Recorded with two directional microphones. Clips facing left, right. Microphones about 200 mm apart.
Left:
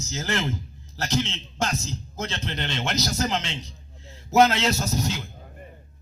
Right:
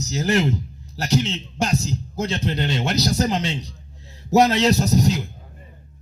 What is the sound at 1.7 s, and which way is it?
Speech, 35° right (ahead or behind).